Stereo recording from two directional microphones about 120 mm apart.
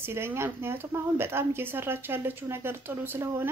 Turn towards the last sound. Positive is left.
turn(degrees=-20)  # may be behind; listen again after turning